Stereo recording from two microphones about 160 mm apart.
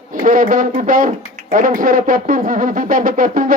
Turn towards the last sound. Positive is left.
turn(degrees=-55)  # may be behind; listen again after turning